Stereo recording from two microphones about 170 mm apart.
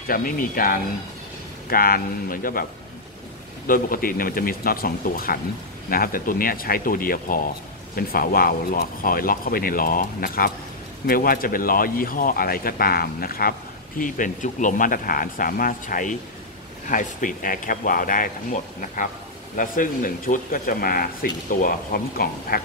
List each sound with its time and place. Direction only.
0.1 s speech: 55° left (ahead or behind)
3.6 s speech: 55° left (ahead or behind)